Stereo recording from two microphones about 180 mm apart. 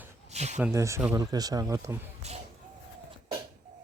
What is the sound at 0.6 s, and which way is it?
Speech, 15° right (ahead or behind).